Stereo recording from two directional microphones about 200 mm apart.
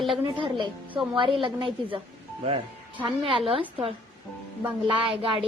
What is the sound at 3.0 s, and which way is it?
Speech, 25° right (ahead or behind).